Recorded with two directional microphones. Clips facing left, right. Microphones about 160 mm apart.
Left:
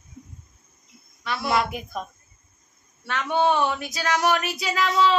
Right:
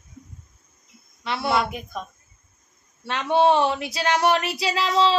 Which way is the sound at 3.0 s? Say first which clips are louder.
Right 3 dB; 30° right (ahead or behind).